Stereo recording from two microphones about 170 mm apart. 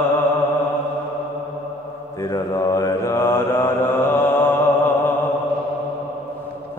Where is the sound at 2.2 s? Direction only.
20° left (ahead or behind).